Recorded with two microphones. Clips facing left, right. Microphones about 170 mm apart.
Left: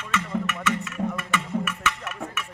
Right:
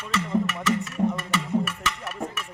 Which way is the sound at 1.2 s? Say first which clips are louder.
Right 2 dB; 35° right (ahead or behind).